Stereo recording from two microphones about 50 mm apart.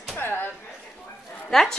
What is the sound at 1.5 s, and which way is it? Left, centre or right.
Speech, centre.